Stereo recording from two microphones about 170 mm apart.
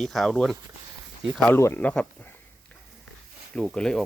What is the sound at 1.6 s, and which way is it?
Speech, 15° left (ahead or behind).